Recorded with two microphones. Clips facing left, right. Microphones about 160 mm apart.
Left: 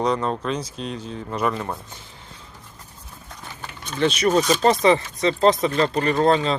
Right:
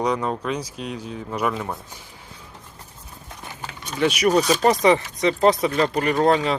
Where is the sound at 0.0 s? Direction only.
10° right (ahead or behind).